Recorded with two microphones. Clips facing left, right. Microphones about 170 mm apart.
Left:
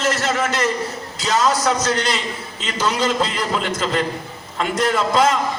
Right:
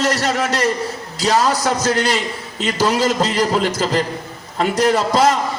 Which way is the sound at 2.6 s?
45° right (ahead or behind).